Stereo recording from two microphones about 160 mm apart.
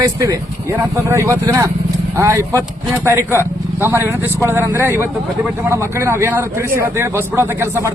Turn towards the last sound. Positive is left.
turn(degrees=-15)  # may be behind; listen again after turning